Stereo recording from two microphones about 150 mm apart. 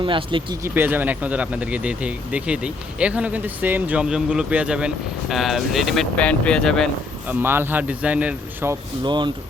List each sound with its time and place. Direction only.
0.0 s speech: 35° right (ahead or behind)
0.6 s speech: 15° right (ahead or behind); by 6.9 s 5° left (ahead or behind)
7.3 s speech: 15° right (ahead or behind)
9.0 s speech: 30° right (ahead or behind)